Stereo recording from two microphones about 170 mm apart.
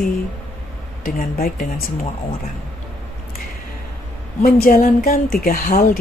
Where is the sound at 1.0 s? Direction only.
60° left (ahead or behind).